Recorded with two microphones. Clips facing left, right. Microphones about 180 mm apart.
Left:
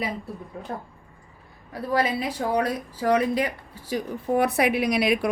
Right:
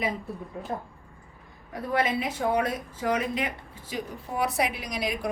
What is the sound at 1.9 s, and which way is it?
Speech, 35° left (ahead or behind).